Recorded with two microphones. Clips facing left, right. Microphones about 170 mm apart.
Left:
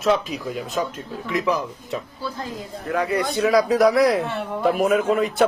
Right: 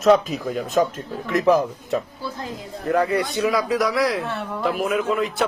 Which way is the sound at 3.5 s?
45° left (ahead or behind).